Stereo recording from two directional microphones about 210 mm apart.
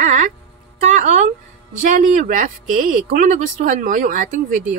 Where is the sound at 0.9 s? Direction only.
35° right (ahead or behind).